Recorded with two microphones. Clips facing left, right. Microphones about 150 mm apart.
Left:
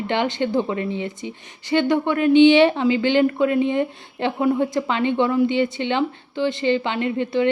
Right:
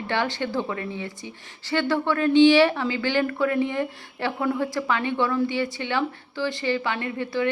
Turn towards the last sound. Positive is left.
turn(degrees=20)  # may be behind; listen again after turning